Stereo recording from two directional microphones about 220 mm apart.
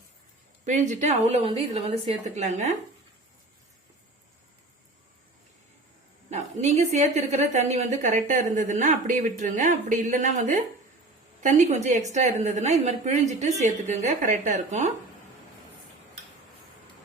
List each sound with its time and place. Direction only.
0.6 s a woman's voice: 35° right (ahead or behind)
6.3 s a woman's voice: 30° right (ahead or behind)